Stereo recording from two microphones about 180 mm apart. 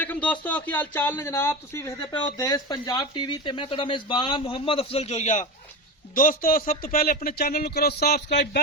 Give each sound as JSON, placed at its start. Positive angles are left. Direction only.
{"t": 0.0, "sound": "speech", "side_deg": 10}
{"t": 8.3, "sound": "speech", "side_deg": 75}